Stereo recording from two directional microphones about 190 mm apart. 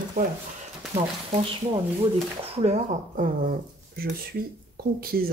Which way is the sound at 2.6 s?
40° right (ahead or behind).